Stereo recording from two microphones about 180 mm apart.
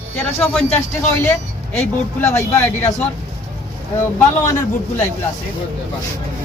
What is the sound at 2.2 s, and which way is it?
Speech, 15° left (ahead or behind).